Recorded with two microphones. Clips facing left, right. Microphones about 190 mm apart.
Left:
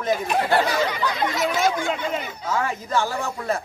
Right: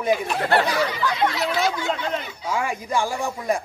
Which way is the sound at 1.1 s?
45° left (ahead or behind).